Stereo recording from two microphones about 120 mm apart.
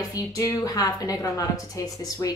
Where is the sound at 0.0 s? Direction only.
30° left (ahead or behind).